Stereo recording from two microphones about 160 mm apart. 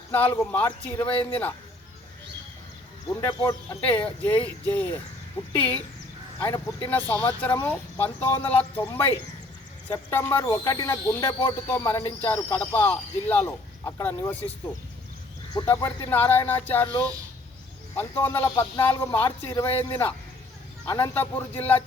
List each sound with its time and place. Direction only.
0.1 s speech: 10° left (ahead or behind)
3.2 s speech: 15° left (ahead or behind)
15.5 s speech: 20° left (ahead or behind)
17.9 s speech: 15° left (ahead or behind)